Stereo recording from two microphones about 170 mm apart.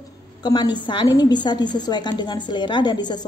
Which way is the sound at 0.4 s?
25° left (ahead or behind).